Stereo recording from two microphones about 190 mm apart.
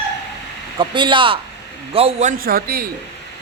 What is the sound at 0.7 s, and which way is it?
A man's voice, 25° right (ahead or behind).